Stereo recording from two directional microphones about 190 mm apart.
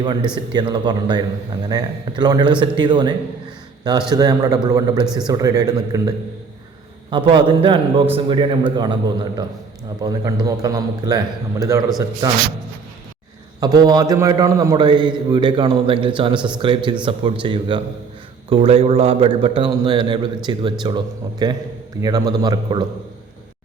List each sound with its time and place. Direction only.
0.0 s a man's voice: 25° right (ahead or behind)
12.2 s a man's voice: 20° right (ahead or behind)
13.6 s a man's voice: 20° right (ahead or behind)